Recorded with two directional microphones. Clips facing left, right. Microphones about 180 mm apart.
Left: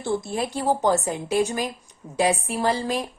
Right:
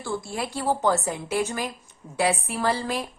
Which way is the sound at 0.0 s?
20° left (ahead or behind).